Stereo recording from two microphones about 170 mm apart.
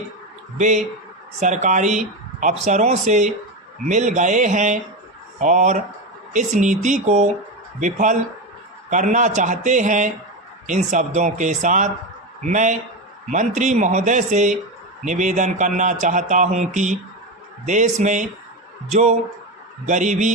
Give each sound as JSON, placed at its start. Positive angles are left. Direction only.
{"t": 0.6, "sound": "a man's voice", "side_deg": -45}